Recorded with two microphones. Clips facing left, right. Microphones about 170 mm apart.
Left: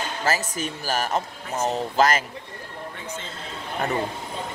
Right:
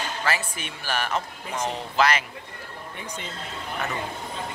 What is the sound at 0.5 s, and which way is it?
A man's voice, 40° left (ahead or behind).